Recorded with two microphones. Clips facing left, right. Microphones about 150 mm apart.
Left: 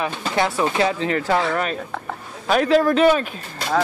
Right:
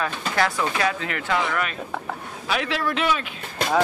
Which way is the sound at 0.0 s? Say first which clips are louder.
Left 2 dB; 25° left (ahead or behind).